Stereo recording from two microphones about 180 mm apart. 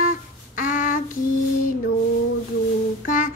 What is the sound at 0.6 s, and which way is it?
Child singing, 50° left (ahead or behind).